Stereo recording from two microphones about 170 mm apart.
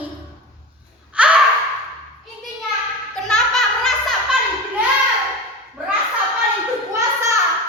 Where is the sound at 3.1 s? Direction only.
5° left (ahead or behind).